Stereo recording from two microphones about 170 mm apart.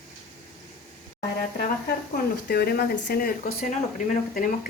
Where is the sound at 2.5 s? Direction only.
65° left (ahead or behind).